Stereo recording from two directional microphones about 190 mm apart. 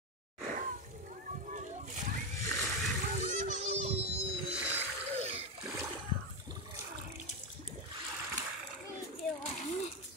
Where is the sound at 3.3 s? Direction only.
40° right (ahead or behind).